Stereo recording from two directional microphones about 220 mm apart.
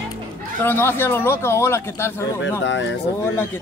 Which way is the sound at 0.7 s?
10° left (ahead or behind).